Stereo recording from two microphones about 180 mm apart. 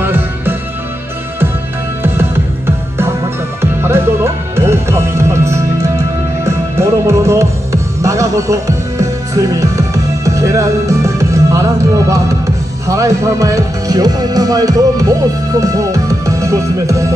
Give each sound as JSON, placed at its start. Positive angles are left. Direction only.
{"t": 0.0, "sound": "music", "side_deg": -10}
{"t": 2.0, "sound": "music", "side_deg": -15}